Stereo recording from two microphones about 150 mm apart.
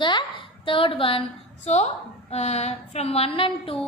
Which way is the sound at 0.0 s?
30° left (ahead or behind).